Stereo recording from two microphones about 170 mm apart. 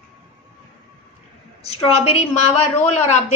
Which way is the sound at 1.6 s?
35° left (ahead or behind).